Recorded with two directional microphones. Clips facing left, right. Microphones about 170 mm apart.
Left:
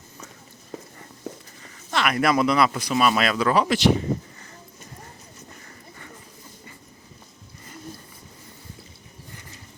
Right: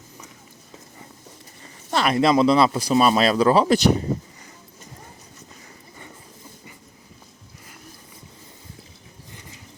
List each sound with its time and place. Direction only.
1.9 s a man's voice: 30° right (ahead or behind)